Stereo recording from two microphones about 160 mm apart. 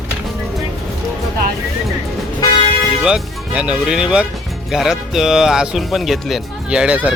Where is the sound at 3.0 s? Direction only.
5° right (ahead or behind).